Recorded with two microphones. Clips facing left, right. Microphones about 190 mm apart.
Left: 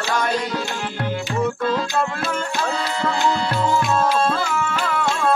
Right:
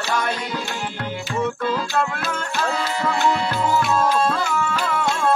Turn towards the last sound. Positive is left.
turn(degrees=0)  # may be behind; listen again after turning